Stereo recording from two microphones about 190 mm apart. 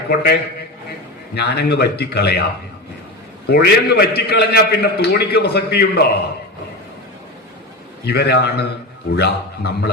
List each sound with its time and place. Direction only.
0.1 s a man's voice: 55° left (ahead or behind)
1.4 s a man's voice: 60° left (ahead or behind)
3.5 s a man's voice: 60° left (ahead or behind)
8.0 s a man's voice: 60° left (ahead or behind)